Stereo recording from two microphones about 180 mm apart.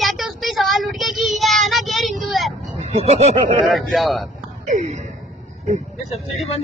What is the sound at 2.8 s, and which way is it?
Speech, 35° right (ahead or behind).